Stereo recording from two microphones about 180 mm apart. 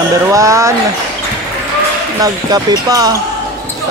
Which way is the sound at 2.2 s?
20° right (ahead or behind).